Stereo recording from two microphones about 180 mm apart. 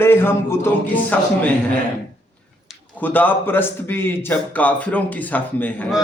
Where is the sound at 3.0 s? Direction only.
10° left (ahead or behind).